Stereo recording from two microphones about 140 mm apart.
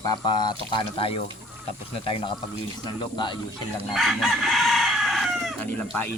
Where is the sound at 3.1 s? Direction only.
35° left (ahead or behind).